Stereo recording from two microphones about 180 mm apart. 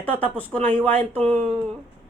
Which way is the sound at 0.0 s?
10° left (ahead or behind).